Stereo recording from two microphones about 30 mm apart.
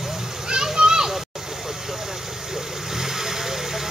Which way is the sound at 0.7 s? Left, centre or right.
Right.